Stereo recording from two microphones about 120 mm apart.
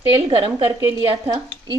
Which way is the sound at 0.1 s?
40° right (ahead or behind).